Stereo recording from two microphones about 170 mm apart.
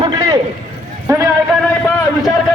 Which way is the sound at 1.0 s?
20° right (ahead or behind).